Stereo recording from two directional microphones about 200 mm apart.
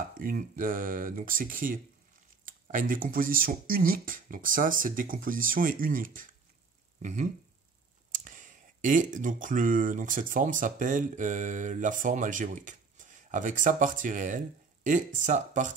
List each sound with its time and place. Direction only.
0.2 s speech: 45° right (ahead or behind)